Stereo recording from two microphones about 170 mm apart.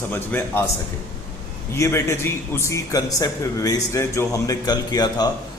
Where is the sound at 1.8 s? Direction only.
15° left (ahead or behind).